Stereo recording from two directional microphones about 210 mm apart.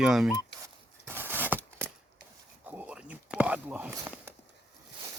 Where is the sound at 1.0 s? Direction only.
10° right (ahead or behind).